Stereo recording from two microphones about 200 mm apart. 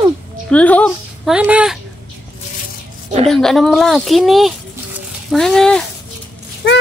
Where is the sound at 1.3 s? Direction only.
5° right (ahead or behind).